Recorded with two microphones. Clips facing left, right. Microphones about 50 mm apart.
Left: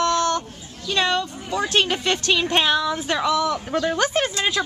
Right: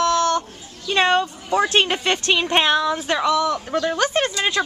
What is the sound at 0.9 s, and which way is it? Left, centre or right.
Speech, right.